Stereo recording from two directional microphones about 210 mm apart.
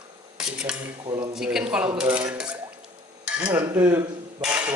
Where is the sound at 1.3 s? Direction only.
5° right (ahead or behind).